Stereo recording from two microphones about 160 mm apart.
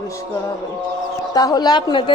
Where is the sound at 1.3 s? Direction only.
25° left (ahead or behind).